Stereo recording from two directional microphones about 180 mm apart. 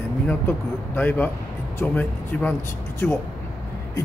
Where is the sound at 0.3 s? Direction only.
10° left (ahead or behind).